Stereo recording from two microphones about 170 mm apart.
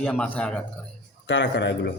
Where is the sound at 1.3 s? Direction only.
90° left.